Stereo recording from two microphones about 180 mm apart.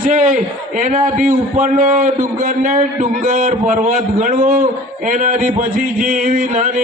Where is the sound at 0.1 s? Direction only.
45° right (ahead or behind).